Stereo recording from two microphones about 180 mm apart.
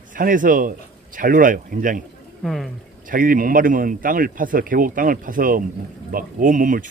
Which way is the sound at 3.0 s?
50° right (ahead or behind).